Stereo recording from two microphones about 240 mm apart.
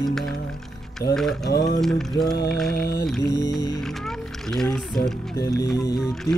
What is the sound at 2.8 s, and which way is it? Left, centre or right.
Music, left.